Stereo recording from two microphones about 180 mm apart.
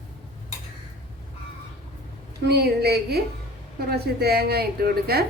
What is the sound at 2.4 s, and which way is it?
A woman's voice, 65° right (ahead or behind).